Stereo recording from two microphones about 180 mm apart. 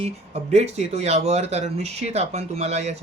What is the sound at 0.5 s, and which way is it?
Speech, 35° right (ahead or behind).